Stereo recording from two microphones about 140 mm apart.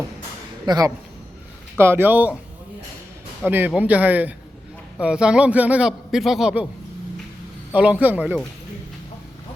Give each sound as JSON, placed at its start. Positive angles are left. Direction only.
{"t": 0.6, "sound": "speech", "side_deg": -30}
{"t": 1.8, "sound": "a man's voice", "side_deg": -15}
{"t": 3.4, "sound": "a man's voice", "side_deg": -15}
{"t": 7.7, "sound": "a man's voice", "side_deg": -10}